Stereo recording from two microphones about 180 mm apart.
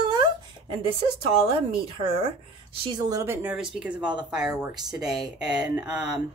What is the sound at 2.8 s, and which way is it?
Speech, 20° right (ahead or behind).